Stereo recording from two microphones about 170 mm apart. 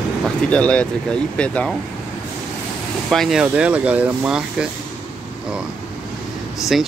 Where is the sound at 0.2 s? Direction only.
5° left (ahead or behind).